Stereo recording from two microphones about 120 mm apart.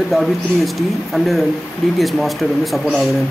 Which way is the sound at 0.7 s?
Centre (ahead or behind).